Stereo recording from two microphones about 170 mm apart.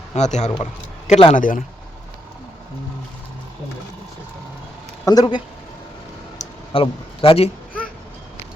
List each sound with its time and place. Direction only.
0.1 s a man's voice: 45° left (ahead or behind)
5.0 s speech: 25° left (ahead or behind)
6.4 s a sound: 35° left (ahead or behind)